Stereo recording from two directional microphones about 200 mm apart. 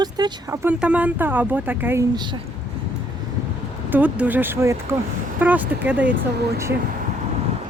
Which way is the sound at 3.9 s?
10° right (ahead or behind).